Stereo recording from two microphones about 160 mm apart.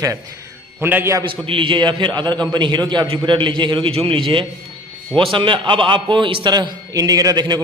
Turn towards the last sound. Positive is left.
turn(degrees=-25)  # may be behind; listen again after turning